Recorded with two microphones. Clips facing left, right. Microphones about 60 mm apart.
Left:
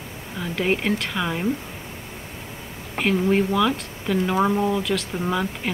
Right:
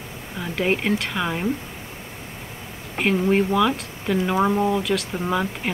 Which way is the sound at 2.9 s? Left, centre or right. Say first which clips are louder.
Right 1 dB; centre.